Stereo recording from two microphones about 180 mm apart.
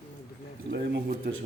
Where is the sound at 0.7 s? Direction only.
65° right (ahead or behind).